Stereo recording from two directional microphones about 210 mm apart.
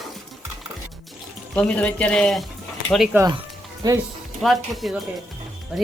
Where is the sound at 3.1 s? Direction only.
10° right (ahead or behind).